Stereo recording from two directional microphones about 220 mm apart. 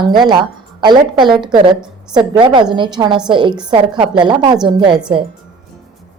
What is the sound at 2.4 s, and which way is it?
A woman's voice, 20° right (ahead or behind).